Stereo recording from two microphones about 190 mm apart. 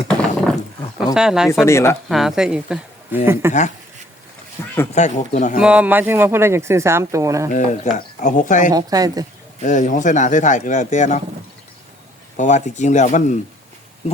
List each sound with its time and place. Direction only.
0.1 s a sound: 5° left (ahead or behind)
1.1 s speech: 5° right (ahead or behind)
1.6 s speech: 15° left (ahead or behind)
2.0 s speech: centre (ahead or behind)
4.6 s speech: 10° left (ahead or behind)
4.9 s speech: 40° left (ahead or behind)
5.5 s speech: 5° right (ahead or behind)
7.5 s speech: 40° left (ahead or behind)
8.7 s speech: 20° right (ahead or behind)
9.6 s speech: 40° left (ahead or behind)
12.4 s speech: 40° left (ahead or behind)